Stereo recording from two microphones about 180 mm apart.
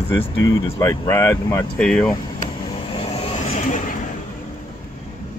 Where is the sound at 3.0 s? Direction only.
35° left (ahead or behind).